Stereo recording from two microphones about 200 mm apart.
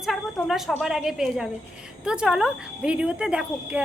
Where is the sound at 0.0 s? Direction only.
Centre (ahead or behind).